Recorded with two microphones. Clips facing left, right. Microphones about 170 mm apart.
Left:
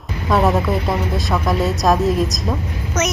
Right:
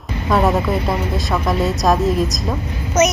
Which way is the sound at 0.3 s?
Centre (ahead or behind).